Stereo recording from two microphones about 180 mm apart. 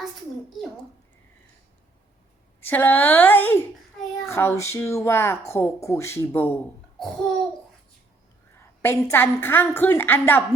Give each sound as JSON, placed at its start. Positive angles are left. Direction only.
{"t": 2.6, "sound": "speech", "side_deg": 10}
{"t": 8.5, "sound": "a woman's voice", "side_deg": 15}